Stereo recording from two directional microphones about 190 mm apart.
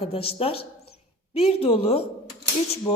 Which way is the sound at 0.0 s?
30° left (ahead or behind).